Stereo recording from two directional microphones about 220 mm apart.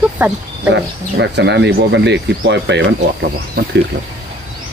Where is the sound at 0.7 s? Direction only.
50° right (ahead or behind).